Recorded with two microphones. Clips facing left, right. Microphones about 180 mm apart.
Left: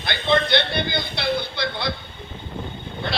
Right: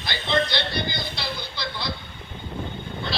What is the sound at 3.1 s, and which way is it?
Speech, 60° left (ahead or behind).